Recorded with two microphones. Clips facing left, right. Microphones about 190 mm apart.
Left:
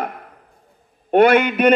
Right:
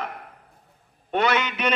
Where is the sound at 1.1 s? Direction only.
55° left (ahead or behind).